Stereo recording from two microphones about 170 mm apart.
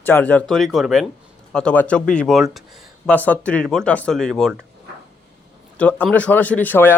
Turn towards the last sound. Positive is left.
turn(degrees=10)  # may be behind; listen again after turning